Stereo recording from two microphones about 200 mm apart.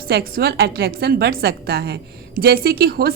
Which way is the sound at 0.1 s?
50° right (ahead or behind).